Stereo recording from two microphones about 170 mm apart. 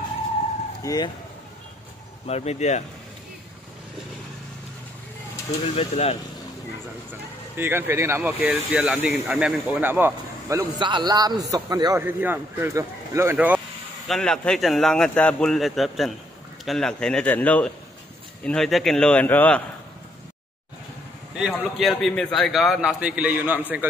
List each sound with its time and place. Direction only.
0.8 s speech: 25° left (ahead or behind)
2.2 s speech: 40° left (ahead or behind)
5.8 s speech: 40° left (ahead or behind)
7.5 s speech: 15° right (ahead or behind)
10.8 s a man's voice: 25° right (ahead or behind); by 13.6 s 10° right (ahead or behind)
14.0 s a man's voice: 5° left (ahead or behind)
21.4 s a man's voice: centre (ahead or behind)